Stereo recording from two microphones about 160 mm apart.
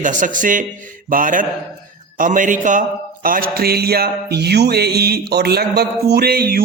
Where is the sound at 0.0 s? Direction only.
55° right (ahead or behind).